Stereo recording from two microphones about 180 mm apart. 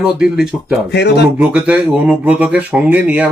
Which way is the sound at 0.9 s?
65° left (ahead or behind).